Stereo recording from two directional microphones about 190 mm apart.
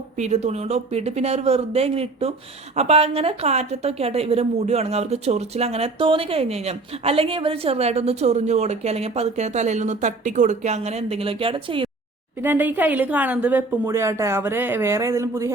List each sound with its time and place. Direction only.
0.2 s a woman's voice: 35° right (ahead or behind)
12.4 s a woman's voice: 10° right (ahead or behind)